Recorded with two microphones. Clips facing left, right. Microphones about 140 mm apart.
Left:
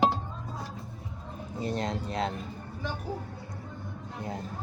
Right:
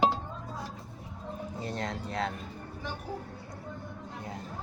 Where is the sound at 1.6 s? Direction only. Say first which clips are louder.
Left 6 dB; 20° left (ahead or behind).